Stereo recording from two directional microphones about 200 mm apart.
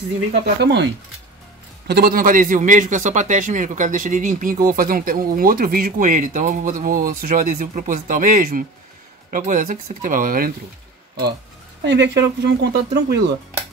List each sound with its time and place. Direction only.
0.6 s speech: 60° right (ahead or behind)
1.9 s a man's voice: 50° right (ahead or behind)
11.8 s speech: 60° right (ahead or behind)